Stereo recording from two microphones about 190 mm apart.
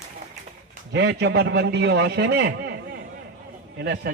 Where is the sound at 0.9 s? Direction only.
60° right (ahead or behind).